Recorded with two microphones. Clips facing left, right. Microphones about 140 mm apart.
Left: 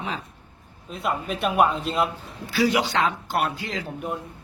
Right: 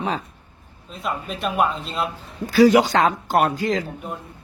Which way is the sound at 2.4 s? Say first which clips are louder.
Right 8 dB; 45° right (ahead or behind).